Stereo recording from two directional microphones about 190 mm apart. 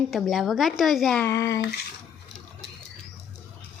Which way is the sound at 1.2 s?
15° left (ahead or behind).